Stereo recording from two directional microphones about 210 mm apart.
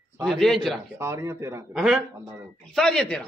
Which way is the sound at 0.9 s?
10° right (ahead or behind).